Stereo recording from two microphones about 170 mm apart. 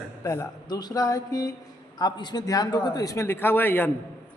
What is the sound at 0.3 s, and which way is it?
Speech, 20° left (ahead or behind).